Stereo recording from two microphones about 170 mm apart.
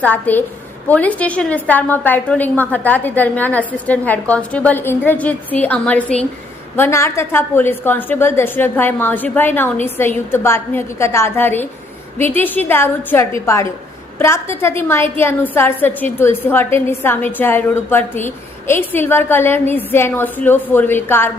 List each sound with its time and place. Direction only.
0.0 s a woman's voice: 10° left (ahead or behind)